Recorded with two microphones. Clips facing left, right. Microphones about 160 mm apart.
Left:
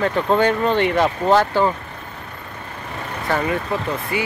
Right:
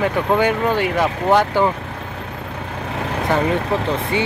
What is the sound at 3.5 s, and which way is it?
Speech, 25° right (ahead or behind).